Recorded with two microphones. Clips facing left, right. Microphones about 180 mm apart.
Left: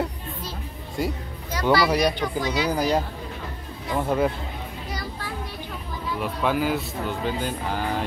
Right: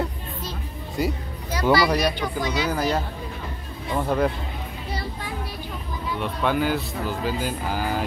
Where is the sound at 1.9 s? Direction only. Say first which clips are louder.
Left 1 dB; 15° left (ahead or behind).